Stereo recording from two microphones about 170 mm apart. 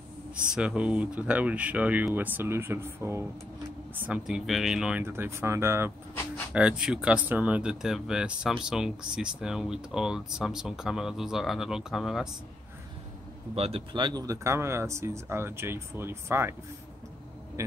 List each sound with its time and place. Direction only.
0.6 s speech: 5° right (ahead or behind)
13.6 s speech: 35° right (ahead or behind); by 16.5 s 15° right (ahead or behind)